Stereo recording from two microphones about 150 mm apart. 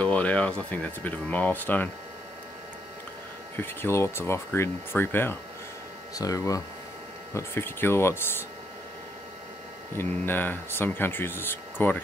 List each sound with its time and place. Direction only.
0.0 s speech: 10° left (ahead or behind)
3.5 s speech: 15° left (ahead or behind)
9.9 s speech: 15° left (ahead or behind)